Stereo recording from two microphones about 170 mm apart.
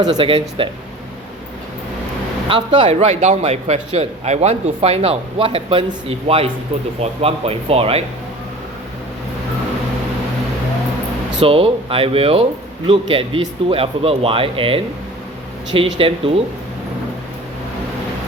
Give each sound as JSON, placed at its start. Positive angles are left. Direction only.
{"t": 0.0, "sound": "a man's voice", "side_deg": -25}
{"t": 2.5, "sound": "a man's voice", "side_deg": -30}
{"t": 11.3, "sound": "a man's voice", "side_deg": -35}